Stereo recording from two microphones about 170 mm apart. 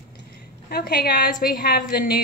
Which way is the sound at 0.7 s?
65° left (ahead or behind).